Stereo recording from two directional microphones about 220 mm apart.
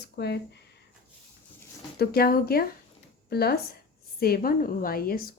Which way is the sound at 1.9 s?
45° left (ahead or behind).